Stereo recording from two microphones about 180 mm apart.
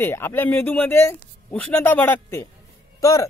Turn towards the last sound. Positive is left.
turn(degrees=20)  # may be behind; listen again after turning